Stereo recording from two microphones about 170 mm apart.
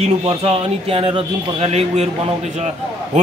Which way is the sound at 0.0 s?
35° right (ahead or behind).